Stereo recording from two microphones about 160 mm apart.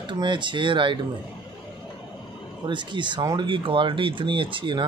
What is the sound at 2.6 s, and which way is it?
Speech, 30° right (ahead or behind).